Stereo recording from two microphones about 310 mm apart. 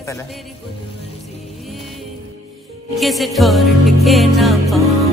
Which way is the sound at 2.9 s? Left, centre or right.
Centre.